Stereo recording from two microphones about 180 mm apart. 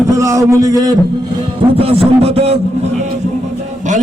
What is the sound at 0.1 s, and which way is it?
Speech, 15° right (ahead or behind).